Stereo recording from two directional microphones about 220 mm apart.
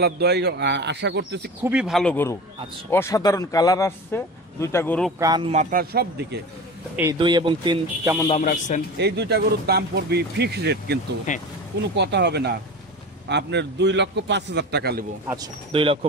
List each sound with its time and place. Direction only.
0.0 s speech: 45° right (ahead or behind)
1.6 s speech: 5° right (ahead or behind)
5.2 s speech: 20° right (ahead or behind)
5.5 s speech: 35° right (ahead or behind)
7.2 s speech: 20° right (ahead or behind)
8.3 s a man's voice: 35° left (ahead or behind)
8.9 s speech: 50° right (ahead or behind)
11.3 s a man's voice: 35° left (ahead or behind)
11.9 s speech: 50° right (ahead or behind)
15.2 s speech: 15° right (ahead or behind)